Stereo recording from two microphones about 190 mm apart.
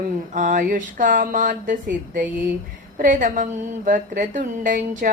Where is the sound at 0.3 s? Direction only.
45° right (ahead or behind).